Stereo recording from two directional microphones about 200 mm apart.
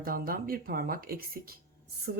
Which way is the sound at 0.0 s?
45° right (ahead or behind).